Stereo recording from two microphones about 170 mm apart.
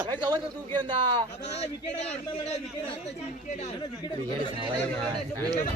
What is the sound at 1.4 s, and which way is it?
Speech, 40° left (ahead or behind).